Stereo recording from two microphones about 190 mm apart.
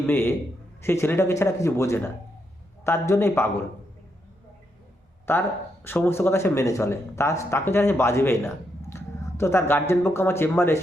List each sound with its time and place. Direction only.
0.1 s speech: 10° left (ahead or behind)
5.2 s speech: 10° left (ahead or behind)